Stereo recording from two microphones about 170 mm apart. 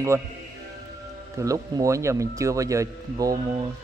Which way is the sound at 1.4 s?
20° right (ahead or behind).